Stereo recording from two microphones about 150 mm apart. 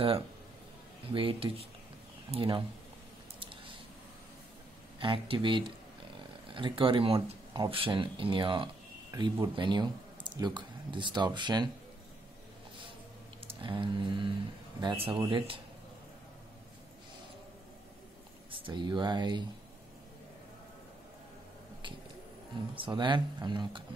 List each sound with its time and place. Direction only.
1.1 s speech: 40° right (ahead or behind)
3.3 s a sound: 35° right (ahead or behind)
5.0 s speech: 35° right (ahead or behind)
13.5 s speech: 35° right (ahead or behind)
18.5 s speech: 30° right (ahead or behind)
22.8 s speech: 30° right (ahead or behind)